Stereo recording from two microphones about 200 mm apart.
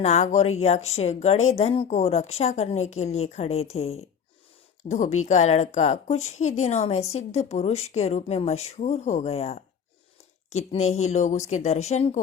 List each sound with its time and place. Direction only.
0.0 s speech: 35° left (ahead or behind)